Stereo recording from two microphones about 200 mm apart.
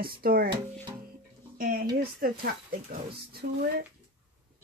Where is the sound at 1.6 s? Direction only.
45° right (ahead or behind).